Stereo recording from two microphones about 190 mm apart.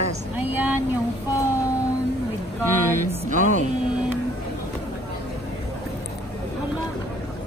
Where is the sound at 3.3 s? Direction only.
40° right (ahead or behind).